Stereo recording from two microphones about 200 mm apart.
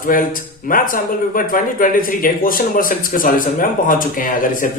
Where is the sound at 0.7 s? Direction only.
45° left (ahead or behind).